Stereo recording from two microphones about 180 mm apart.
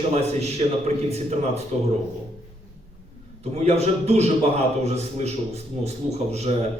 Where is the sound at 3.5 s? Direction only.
35° right (ahead or behind).